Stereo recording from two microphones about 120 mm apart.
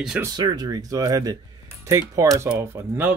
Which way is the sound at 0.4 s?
35° right (ahead or behind).